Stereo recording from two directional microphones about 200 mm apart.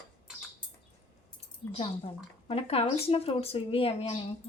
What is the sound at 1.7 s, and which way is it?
Speech, 30° left (ahead or behind).